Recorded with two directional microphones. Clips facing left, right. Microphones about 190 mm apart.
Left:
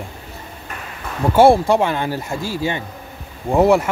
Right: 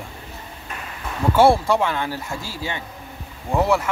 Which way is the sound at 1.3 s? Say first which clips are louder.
Left 4 dB; 15° left (ahead or behind).